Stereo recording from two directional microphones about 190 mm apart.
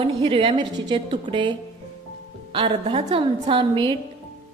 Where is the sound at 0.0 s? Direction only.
30° right (ahead or behind).